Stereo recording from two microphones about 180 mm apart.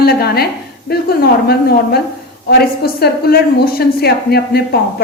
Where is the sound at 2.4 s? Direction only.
60° left (ahead or behind).